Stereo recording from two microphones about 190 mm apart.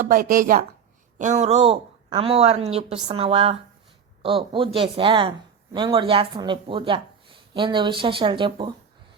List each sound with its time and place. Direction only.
0.0 s a woman's voice: 50° right (ahead or behind)
1.2 s a woman's voice: 35° right (ahead or behind)